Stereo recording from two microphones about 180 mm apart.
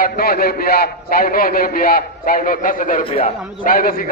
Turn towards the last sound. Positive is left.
turn(degrees=50)  # may be behind; listen again after turning